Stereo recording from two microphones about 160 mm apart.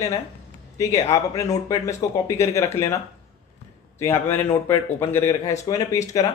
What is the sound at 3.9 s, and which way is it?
A man's voice, 15° left (ahead or behind).